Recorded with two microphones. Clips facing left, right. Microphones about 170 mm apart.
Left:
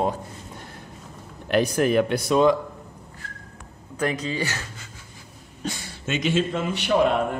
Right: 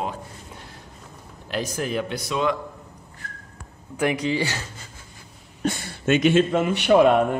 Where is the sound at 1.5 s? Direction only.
60° left (ahead or behind).